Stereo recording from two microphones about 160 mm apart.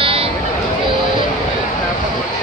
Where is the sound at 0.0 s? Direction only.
35° right (ahead or behind).